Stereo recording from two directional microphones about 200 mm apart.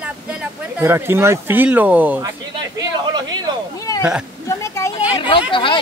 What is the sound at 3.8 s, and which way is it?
Speech, 15° left (ahead or behind).